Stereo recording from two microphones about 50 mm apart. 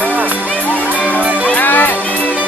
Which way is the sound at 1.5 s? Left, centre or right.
Left.